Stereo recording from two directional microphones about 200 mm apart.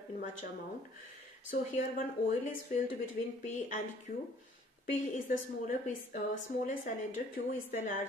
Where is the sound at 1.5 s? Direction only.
45° left (ahead or behind).